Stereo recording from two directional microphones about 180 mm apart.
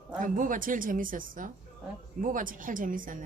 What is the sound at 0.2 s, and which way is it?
A woman's voice, 45° right (ahead or behind).